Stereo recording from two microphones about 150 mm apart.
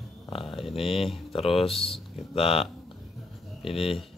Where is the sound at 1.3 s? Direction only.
40° left (ahead or behind).